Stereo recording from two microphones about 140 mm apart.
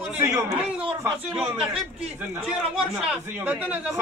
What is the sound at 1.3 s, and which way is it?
A man's voice, 5° right (ahead or behind).